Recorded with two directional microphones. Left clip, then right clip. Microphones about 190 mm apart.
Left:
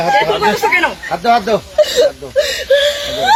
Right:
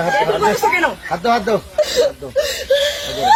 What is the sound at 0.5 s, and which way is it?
Speech, 10° right (ahead or behind).